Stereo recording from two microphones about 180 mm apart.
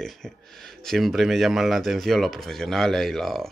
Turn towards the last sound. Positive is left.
turn(degrees=0)  # may be behind; listen again after turning